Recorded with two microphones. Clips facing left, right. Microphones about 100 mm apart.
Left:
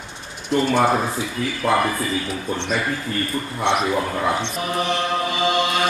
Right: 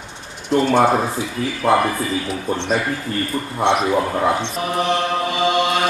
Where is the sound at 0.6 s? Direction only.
25° right (ahead or behind).